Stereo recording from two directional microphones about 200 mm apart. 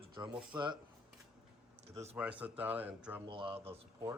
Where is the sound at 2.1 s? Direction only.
5° right (ahead or behind).